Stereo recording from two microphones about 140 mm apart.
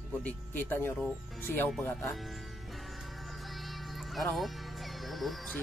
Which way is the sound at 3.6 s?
Centre (ahead or behind).